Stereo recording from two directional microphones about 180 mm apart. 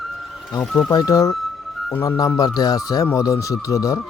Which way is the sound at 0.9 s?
20° left (ahead or behind).